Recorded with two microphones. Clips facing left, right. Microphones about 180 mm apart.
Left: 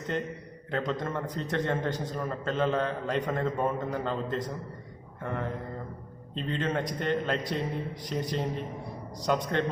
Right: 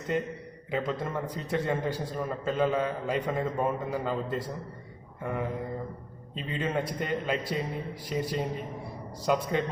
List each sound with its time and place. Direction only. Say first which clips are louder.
0.1 s a man's voice: right 4 dB; 5° right (ahead or behind)